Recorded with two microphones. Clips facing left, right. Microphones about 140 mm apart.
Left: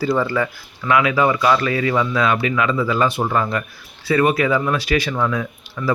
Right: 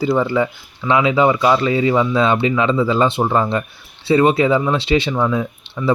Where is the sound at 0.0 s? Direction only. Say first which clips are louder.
Right 3 dB; 20° right (ahead or behind).